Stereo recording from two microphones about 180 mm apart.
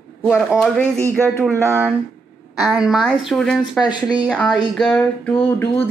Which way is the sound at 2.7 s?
5° right (ahead or behind).